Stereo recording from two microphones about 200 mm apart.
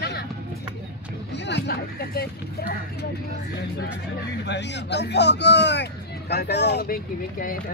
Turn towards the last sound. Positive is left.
turn(degrees=45)  # may be behind; listen again after turning